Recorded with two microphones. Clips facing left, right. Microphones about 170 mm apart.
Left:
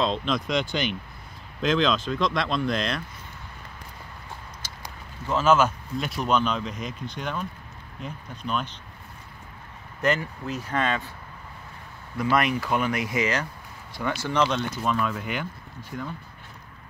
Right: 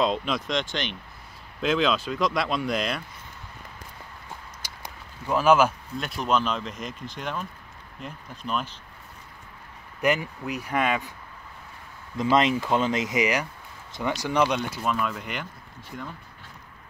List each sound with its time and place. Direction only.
0.0 s speech: 5° right (ahead or behind)
4.6 s a sound: 15° right (ahead or behind)
5.3 s speech: 10° right (ahead or behind)
5.9 s speech: centre (ahead or behind)
10.0 s speech: 15° right (ahead or behind)
12.2 s speech: 20° right (ahead or behind); by 16.1 s centre (ahead or behind)